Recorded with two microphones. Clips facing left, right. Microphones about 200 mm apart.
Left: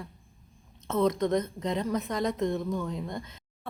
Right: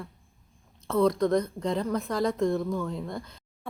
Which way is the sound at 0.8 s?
20° left (ahead or behind).